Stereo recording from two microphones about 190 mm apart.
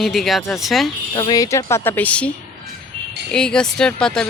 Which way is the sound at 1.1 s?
20° left (ahead or behind).